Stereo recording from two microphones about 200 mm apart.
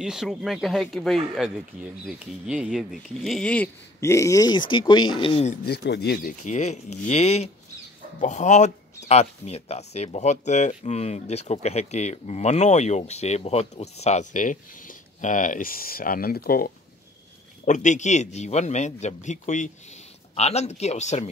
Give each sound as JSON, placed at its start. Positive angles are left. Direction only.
{"t": 0.0, "sound": "speech", "side_deg": 0}
{"t": 5.7, "sound": "speech", "side_deg": 55}
{"t": 17.6, "sound": "speech", "side_deg": 40}